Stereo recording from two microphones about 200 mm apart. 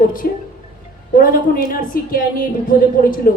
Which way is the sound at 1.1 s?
45° left (ahead or behind).